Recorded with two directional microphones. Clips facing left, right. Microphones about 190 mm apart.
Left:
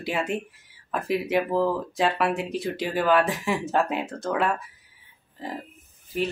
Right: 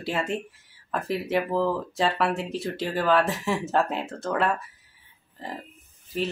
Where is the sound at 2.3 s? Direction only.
20° left (ahead or behind).